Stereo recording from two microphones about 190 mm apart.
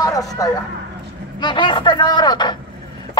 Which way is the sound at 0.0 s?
20° left (ahead or behind).